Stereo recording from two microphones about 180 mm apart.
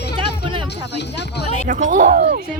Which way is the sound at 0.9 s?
70° left (ahead or behind).